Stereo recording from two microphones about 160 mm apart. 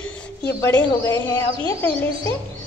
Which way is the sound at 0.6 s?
20° left (ahead or behind).